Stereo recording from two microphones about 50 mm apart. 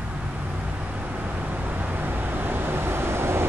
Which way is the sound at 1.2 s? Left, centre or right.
Right.